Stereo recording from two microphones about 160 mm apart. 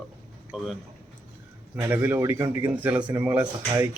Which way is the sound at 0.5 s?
5° right (ahead or behind).